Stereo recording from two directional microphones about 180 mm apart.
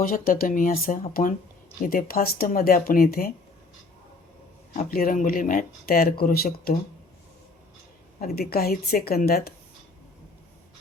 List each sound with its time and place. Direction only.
0.0 s speech: 50° left (ahead or behind)
4.8 s speech: 55° left (ahead or behind)
8.2 s speech: 60° left (ahead or behind)